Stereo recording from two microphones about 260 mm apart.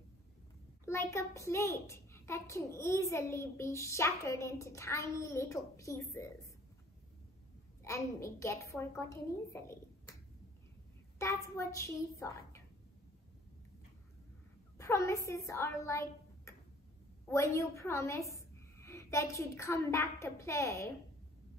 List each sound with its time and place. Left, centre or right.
0.8 s a child's voice: centre
7.8 s a child's voice: centre
11.1 s a child's voice: centre
14.8 s a woman's voice: centre